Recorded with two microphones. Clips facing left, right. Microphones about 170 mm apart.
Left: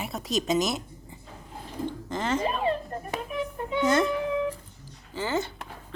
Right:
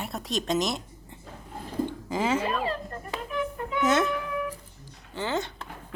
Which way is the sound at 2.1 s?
10° right (ahead or behind).